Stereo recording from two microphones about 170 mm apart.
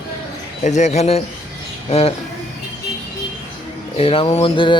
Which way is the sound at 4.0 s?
35° left (ahead or behind).